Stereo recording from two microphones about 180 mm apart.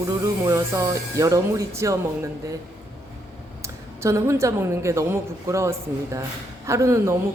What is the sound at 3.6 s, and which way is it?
A woman's voice, 15° right (ahead or behind).